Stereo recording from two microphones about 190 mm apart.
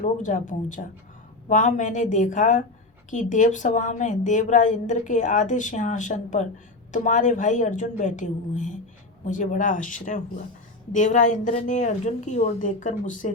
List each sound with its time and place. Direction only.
0.0 s a woman's voice: 40° left (ahead or behind)